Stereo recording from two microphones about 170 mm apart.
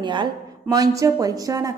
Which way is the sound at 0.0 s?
25° right (ahead or behind).